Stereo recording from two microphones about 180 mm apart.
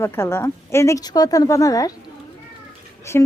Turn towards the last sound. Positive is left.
turn(degrees=15)  # may be behind; listen again after turning